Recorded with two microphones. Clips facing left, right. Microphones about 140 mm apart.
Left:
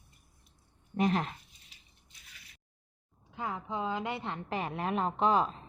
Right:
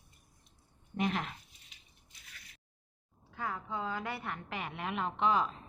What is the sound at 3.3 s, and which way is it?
A woman's voice, 20° left (ahead or behind).